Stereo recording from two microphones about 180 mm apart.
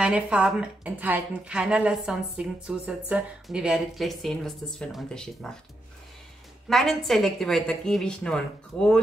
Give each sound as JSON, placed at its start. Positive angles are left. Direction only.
{"t": 0.0, "sound": "a woman's voice", "side_deg": -5}
{"t": 6.7, "sound": "a woman's voice", "side_deg": 0}